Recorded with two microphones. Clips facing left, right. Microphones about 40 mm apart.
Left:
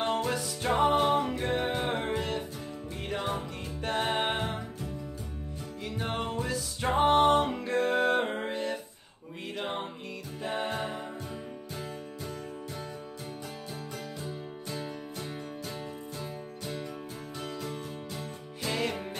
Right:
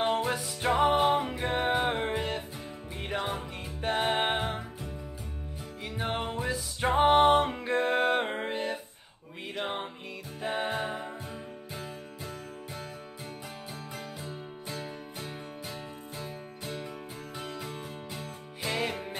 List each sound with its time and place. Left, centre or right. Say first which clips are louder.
0.0 s music: right 1 dB; centre
5.9 s music: right 1 dB; centre
14.2 s music: left 1 dB; centre
16.2 s music: left 1 dB; centre